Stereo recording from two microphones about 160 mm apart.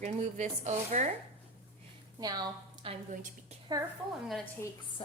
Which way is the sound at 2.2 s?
25° right (ahead or behind).